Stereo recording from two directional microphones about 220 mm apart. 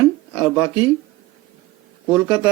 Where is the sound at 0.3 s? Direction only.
10° right (ahead or behind).